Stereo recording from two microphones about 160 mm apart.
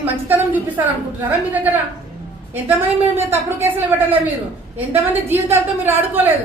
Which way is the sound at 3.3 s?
15° right (ahead or behind).